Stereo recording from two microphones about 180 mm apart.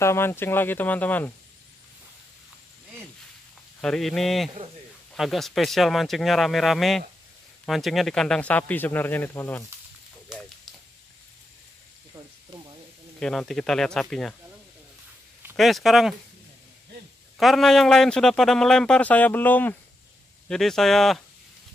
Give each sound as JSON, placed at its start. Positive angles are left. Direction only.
{"t": 0.0, "sound": "speech", "side_deg": 15}
{"t": 3.8, "sound": "speech", "side_deg": 0}
{"t": 10.3, "sound": "a sound", "side_deg": -5}
{"t": 12.5, "sound": "sizzle", "side_deg": -25}
{"t": 13.2, "sound": "speech", "side_deg": 5}
{"t": 15.5, "sound": "speech", "side_deg": 0}
{"t": 17.4, "sound": "speech", "side_deg": 0}